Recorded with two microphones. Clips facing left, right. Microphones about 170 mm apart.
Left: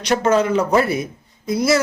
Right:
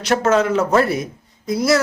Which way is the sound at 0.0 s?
5° right (ahead or behind).